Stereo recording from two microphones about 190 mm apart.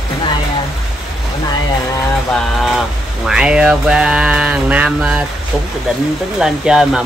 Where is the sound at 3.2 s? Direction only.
5° right (ahead or behind).